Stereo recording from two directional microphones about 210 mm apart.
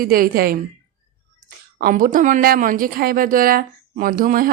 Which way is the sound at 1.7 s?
40° right (ahead or behind).